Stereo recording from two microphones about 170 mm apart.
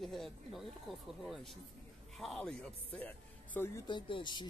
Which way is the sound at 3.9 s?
30° left (ahead or behind).